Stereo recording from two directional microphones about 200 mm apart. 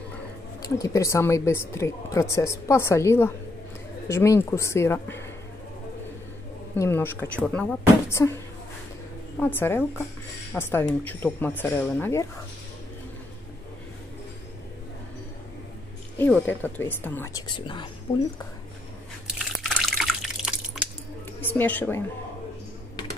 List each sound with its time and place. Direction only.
0.6 s a woman's voice: 15° left (ahead or behind)
6.7 s a woman's voice: 10° left (ahead or behind)
9.4 s a woman's voice: 10° left (ahead or behind)
16.2 s a woman's voice: 5° left (ahead or behind)
19.2 s drip: 5° right (ahead or behind)
21.4 s a woman's voice: 10° left (ahead or behind)